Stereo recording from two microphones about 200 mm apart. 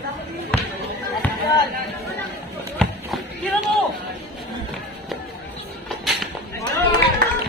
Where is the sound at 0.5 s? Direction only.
5° left (ahead or behind).